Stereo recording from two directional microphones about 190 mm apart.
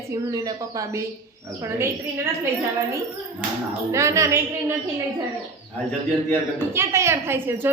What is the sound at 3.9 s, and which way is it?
Speech, 15° right (ahead or behind).